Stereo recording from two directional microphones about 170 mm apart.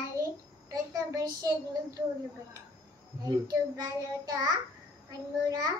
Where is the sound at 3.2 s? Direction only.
20° right (ahead or behind).